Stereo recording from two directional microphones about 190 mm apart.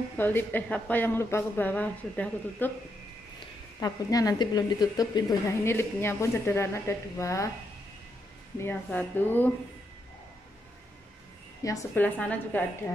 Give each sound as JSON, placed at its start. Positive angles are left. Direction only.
{"t": 0.2, "sound": "a woman's voice", "side_deg": 10}
{"t": 3.8, "sound": "a woman's voice", "side_deg": 20}
{"t": 8.5, "sound": "a woman's voice", "side_deg": 10}
{"t": 11.6, "sound": "a woman's voice", "side_deg": 15}